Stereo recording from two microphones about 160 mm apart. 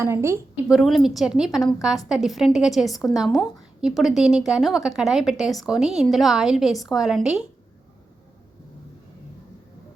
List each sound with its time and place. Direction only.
0.0 s a woman's voice: 15° right (ahead or behind)
0.7 s a woman's voice: centre (ahead or behind)